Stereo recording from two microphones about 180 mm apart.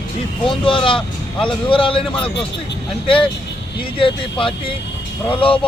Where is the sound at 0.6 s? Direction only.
30° left (ahead or behind).